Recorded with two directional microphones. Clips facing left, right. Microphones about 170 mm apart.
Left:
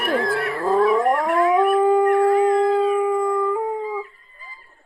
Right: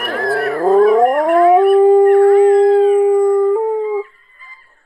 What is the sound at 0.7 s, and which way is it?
Howl, 40° right (ahead or behind).